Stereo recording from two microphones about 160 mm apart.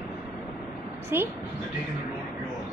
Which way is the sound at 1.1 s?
15° right (ahead or behind).